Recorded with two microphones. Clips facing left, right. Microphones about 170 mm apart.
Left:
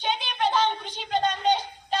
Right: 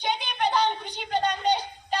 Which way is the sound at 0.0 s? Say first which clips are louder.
Even; 15° right (ahead or behind).